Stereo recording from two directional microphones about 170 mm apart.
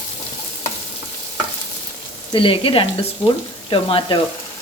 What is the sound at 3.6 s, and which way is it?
Speech, 30° left (ahead or behind).